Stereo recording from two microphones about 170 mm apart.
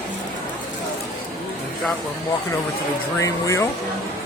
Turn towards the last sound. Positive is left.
turn(degrees=20)  # may be behind; listen again after turning